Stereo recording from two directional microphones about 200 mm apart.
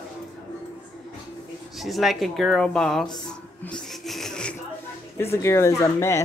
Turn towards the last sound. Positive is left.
turn(degrees=15)  # may be behind; listen again after turning